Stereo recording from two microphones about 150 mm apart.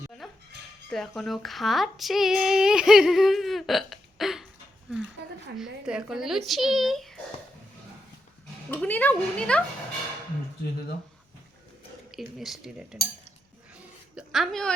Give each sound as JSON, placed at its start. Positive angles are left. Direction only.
{"t": 0.9, "sound": "speech", "side_deg": 0}
{"t": 4.9, "sound": "a sound", "side_deg": -5}
{"t": 5.5, "sound": "speech", "side_deg": -5}
{"t": 8.7, "sound": "speech", "side_deg": 10}
{"t": 12.1, "sound": "speech", "side_deg": 0}
{"t": 13.7, "sound": "a sound", "side_deg": -5}